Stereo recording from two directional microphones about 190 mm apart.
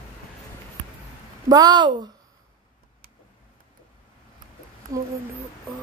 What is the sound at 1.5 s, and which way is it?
Speech, 20° right (ahead or behind).